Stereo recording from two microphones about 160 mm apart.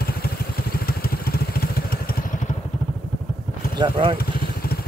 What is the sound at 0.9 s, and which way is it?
Vehicle, 70° left (ahead or behind).